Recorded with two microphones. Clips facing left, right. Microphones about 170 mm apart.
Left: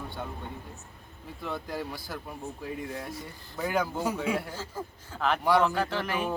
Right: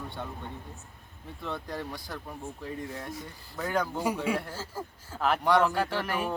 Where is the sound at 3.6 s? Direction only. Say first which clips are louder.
Left 1 dB; 5° left (ahead or behind).